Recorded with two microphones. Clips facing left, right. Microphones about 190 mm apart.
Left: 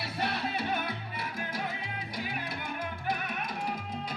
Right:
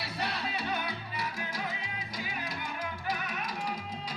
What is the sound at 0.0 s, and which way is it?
Music, 55° left (ahead or behind).